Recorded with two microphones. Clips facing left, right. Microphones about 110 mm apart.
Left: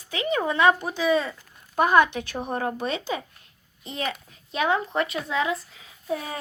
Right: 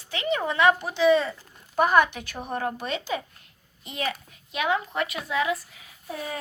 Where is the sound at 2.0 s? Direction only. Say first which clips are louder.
Left 4 dB; 25° left (ahead or behind).